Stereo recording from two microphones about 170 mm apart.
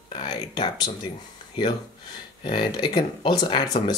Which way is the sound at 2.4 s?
30° left (ahead or behind).